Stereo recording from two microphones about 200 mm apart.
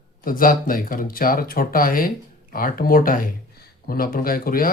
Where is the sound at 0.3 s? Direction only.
45° left (ahead or behind).